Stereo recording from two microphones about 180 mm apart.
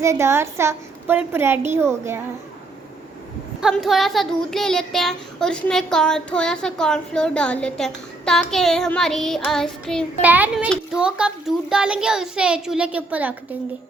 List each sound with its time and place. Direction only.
0.0 s a child's voice: 15° right (ahead or behind)
3.6 s speech: centre (ahead or behind)
10.2 s a child's voice: 10° right (ahead or behind)